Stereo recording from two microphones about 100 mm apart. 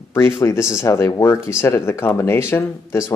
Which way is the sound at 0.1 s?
30° left (ahead or behind).